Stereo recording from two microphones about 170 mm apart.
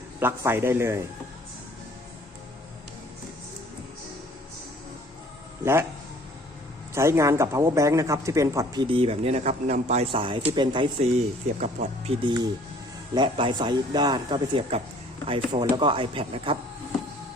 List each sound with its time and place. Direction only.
0.2 s a man's voice: 15° right (ahead or behind)
6.9 s a man's voice: 15° right (ahead or behind)
11.6 s a man's voice: 35° right (ahead or behind)